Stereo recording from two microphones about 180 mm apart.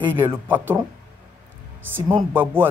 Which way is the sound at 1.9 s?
10° right (ahead or behind).